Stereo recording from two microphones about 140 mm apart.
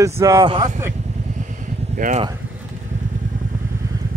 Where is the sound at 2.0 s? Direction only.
65° right (ahead or behind).